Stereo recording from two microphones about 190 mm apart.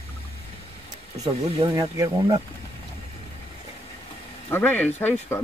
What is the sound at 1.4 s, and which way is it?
Speech, 25° right (ahead or behind).